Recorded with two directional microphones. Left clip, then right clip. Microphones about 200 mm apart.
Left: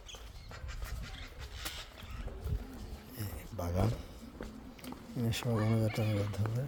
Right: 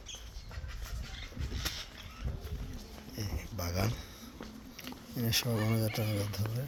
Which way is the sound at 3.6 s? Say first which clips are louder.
Even; 20° left (ahead or behind).